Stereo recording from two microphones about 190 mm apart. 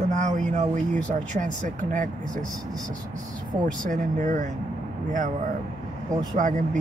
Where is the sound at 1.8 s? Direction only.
40° right (ahead or behind).